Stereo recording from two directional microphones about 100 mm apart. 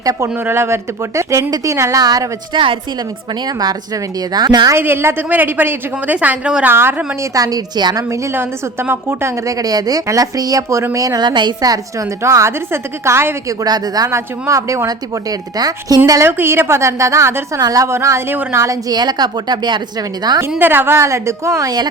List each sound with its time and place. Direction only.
0.0 s speech: 35° right (ahead or behind)
0.3 s a woman's voice: 25° right (ahead or behind)
2.5 s a woman's voice: 55° right (ahead or behind)
3.4 s a woman's voice: 40° right (ahead or behind)
4.7 s a woman's voice: 20° right (ahead or behind)
6.7 s a woman's voice: 20° right (ahead or behind)
7.3 s a woman's voice: 40° right (ahead or behind)
8.1 s a woman's voice: 25° right (ahead or behind)
13.6 s a woman's voice: 40° right (ahead or behind)
14.1 s a woman's voice: 30° right (ahead or behind)
16.4 s a woman's voice: 25° right (ahead or behind); by 20.4 s 45° right (ahead or behind)
20.6 s a woman's voice: 20° right (ahead or behind); by 21.8 s 35° right (ahead or behind)